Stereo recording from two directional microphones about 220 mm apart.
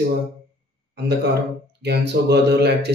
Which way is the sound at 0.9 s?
50° right (ahead or behind).